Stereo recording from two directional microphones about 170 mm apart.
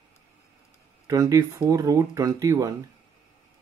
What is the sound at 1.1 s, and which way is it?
Speech, 20° right (ahead or behind).